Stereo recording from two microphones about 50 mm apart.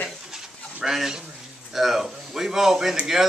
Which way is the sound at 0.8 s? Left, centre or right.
Centre.